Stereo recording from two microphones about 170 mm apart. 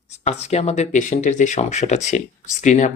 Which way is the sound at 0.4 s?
40° left (ahead or behind).